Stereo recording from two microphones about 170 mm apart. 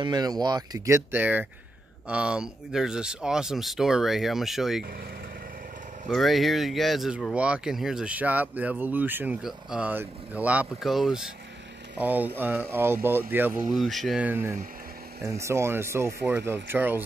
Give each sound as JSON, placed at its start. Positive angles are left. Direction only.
{"t": 0.0, "sound": "speech", "side_deg": -25}
{"t": 6.0, "sound": "speech", "side_deg": 0}
{"t": 13.7, "sound": "speech", "side_deg": 0}